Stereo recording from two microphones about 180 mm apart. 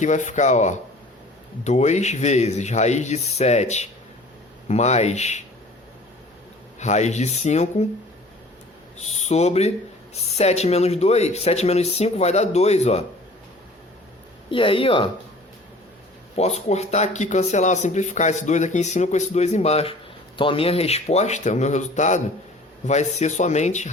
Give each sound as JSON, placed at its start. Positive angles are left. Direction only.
{"t": 0.0, "sound": "speech", "side_deg": 40}
{"t": 6.7, "sound": "speech", "side_deg": 40}
{"t": 9.0, "sound": "speech", "side_deg": 40}
{"t": 14.5, "sound": "a woman's voice", "side_deg": 30}
{"t": 16.3, "sound": "speech", "side_deg": 35}